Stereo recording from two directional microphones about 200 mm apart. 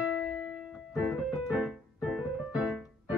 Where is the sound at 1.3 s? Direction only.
Centre (ahead or behind).